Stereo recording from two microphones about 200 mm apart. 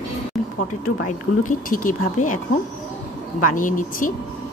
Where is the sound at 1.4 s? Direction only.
40° left (ahead or behind).